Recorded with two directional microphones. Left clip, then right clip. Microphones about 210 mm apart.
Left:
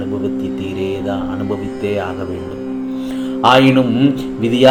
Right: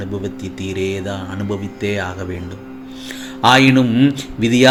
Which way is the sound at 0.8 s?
35° right (ahead or behind).